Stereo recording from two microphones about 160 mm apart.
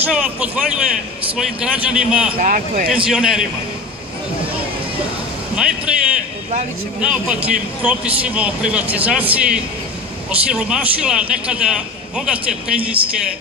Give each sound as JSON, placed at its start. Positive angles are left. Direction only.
{"t": 0.1, "sound": "a man's voice", "side_deg": -5}
{"t": 2.3, "sound": "speech", "side_deg": -55}
{"t": 3.1, "sound": "a man's voice", "side_deg": -5}
{"t": 5.6, "sound": "a man's voice", "side_deg": -5}